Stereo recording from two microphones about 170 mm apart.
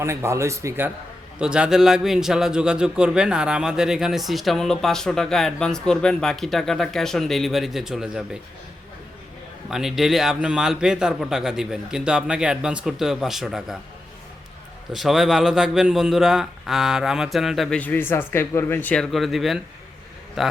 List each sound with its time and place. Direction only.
0.0 s speech: 15° right (ahead or behind)
1.4 s a man's voice: 5° right (ahead or behind)
9.6 s a man's voice: 5° right (ahead or behind)
14.9 s a man's voice: centre (ahead or behind)